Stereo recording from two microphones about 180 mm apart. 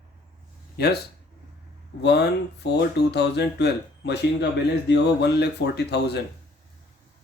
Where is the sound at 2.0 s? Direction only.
70° left (ahead or behind).